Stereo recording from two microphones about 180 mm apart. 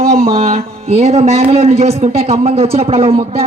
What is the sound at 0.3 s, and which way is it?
A man's voice, 35° right (ahead or behind).